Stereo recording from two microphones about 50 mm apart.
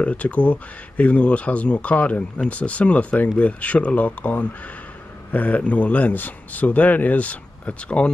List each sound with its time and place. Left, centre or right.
0.0 s speech: left